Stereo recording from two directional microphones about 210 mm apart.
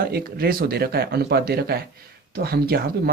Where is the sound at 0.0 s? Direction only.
45° right (ahead or behind).